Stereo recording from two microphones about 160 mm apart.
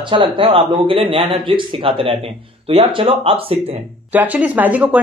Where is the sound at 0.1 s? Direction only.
30° right (ahead or behind).